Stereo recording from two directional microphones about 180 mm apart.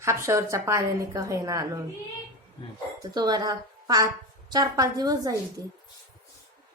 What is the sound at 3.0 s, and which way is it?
A woman's voice, 20° right (ahead or behind).